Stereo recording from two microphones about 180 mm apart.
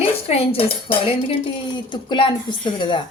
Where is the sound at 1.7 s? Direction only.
25° left (ahead or behind).